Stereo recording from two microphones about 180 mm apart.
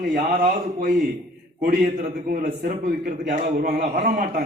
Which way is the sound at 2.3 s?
50° right (ahead or behind).